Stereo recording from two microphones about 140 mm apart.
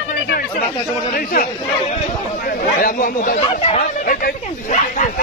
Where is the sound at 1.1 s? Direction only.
90° left.